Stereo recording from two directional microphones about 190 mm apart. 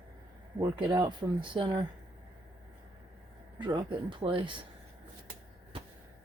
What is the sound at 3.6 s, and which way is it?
Speech, 25° right (ahead or behind).